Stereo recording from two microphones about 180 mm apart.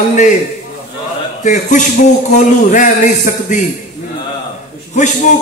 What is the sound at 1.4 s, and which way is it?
A man's voice, 45° left (ahead or behind).